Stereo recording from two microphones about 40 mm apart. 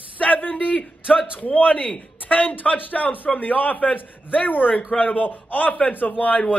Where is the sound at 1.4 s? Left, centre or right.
Left.